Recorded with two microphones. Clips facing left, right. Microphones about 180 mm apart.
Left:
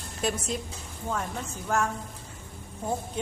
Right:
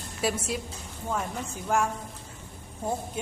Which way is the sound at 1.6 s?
10° right (ahead or behind).